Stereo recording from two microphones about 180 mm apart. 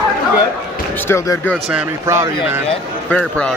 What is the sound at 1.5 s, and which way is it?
Speech, 5° right (ahead or behind).